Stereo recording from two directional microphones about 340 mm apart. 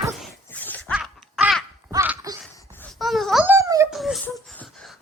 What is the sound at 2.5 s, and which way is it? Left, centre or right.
Wail, centre.